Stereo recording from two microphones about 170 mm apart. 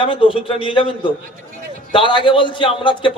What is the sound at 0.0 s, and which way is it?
A man's voice, 30° left (ahead or behind).